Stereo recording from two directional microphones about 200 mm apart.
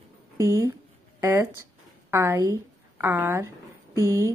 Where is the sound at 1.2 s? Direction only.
10° right (ahead or behind).